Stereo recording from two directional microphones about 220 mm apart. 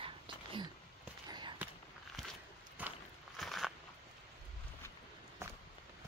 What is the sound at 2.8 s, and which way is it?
Walk, 5° right (ahead or behind).